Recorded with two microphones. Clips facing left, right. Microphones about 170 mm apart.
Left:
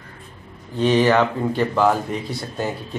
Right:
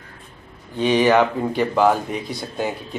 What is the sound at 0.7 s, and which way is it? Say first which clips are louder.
A man's voice: even; 10° right (ahead or behind).